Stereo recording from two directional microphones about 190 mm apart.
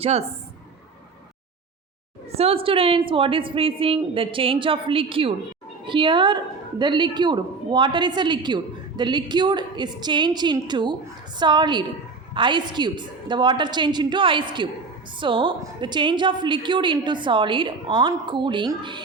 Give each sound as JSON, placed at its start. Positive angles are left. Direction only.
{"t": 0.0, "sound": "a woman's voice", "side_deg": -35}
{"t": 2.3, "sound": "a woman's voice", "side_deg": -30}